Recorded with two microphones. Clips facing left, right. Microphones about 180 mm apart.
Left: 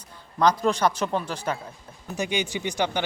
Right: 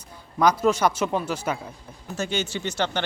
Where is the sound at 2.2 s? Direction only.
15° left (ahead or behind).